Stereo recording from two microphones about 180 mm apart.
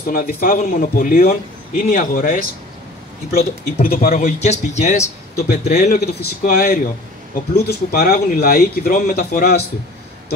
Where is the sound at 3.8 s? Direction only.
55° left (ahead or behind).